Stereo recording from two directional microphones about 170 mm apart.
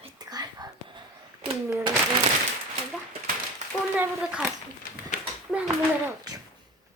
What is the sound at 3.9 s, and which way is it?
Speech, 5° right (ahead or behind).